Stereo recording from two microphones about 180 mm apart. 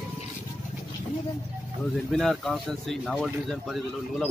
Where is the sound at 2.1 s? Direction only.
Centre (ahead or behind).